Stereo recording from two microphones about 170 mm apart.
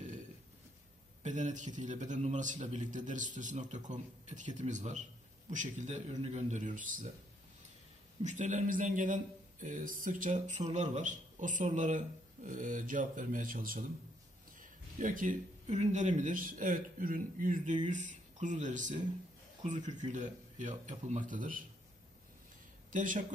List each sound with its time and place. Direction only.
1.2 s a man's voice: 45° right (ahead or behind)
8.2 s a man's voice: 45° right (ahead or behind)
22.8 s speech: 50° right (ahead or behind)